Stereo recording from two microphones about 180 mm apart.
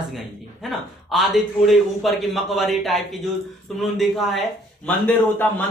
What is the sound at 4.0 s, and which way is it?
Speech, centre (ahead or behind).